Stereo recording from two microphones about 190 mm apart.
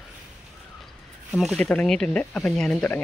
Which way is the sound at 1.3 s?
Centre (ahead or behind).